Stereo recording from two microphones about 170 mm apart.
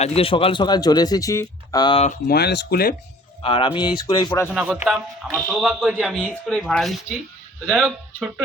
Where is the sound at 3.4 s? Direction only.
30° left (ahead or behind).